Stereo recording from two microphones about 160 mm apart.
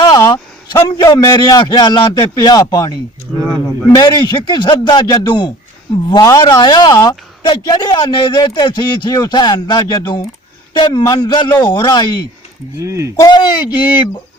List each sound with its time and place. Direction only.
0.0 s a man's voice: 25° left (ahead or behind)
12.8 s speech: 20° right (ahead or behind)
13.1 s speech: 25° left (ahead or behind)